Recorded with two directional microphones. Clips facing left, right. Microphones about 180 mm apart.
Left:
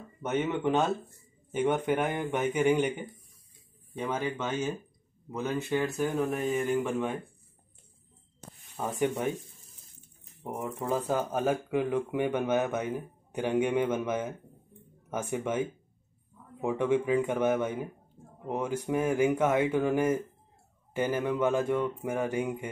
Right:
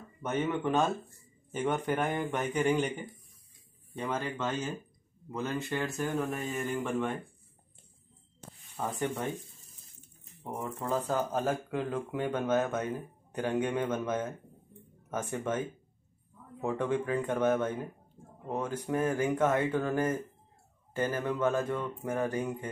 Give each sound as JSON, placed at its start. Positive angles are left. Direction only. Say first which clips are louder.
{"t": 0.2, "sound": "speech", "louder": "left 2 dB", "side_deg": 20}
{"t": 1.6, "sound": "speech", "louder": "left 3 dB", "side_deg": 5}
{"t": 8.7, "sound": "speech", "louder": "left 4 dB", "side_deg": 10}
{"t": 10.6, "sound": "speech", "louder": "left 2 dB", "side_deg": 15}
{"t": 16.6, "sound": "speech", "louder": "left 4 dB", "side_deg": 10}